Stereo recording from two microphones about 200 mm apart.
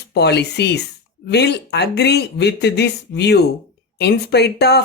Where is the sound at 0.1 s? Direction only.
55° left (ahead or behind).